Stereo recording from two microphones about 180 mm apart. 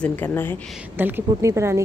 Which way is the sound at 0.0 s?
10° left (ahead or behind).